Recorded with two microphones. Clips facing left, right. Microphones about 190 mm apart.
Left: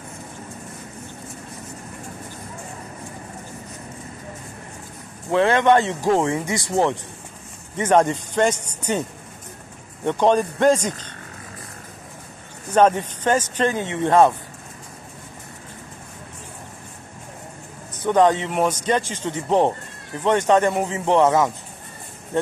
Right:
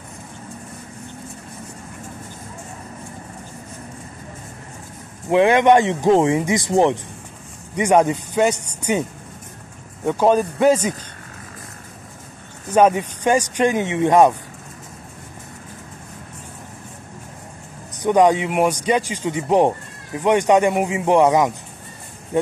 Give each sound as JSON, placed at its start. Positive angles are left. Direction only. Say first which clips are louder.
{"t": 5.3, "sound": "a man's voice", "louder": "right 3 dB", "side_deg": -15}
{"t": 10.0, "sound": "speech", "louder": "right 2 dB", "side_deg": -5}
{"t": 12.7, "sound": "speech", "louder": "right 1 dB", "side_deg": -10}
{"t": 18.0, "sound": "speech", "louder": "right 2 dB", "side_deg": -10}